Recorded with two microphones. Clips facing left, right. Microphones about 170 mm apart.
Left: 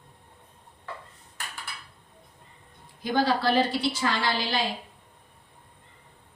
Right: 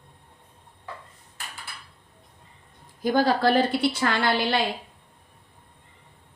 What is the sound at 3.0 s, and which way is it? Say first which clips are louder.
A woman's voice: right 3 dB; 50° right (ahead or behind).